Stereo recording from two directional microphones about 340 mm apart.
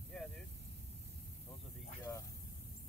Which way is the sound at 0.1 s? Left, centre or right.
Centre.